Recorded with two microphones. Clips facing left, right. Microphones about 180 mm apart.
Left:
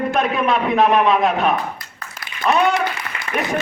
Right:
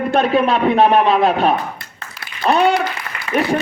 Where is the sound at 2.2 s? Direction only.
30° right (ahead or behind).